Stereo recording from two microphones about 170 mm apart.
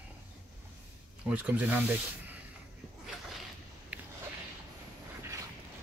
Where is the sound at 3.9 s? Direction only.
10° right (ahead or behind).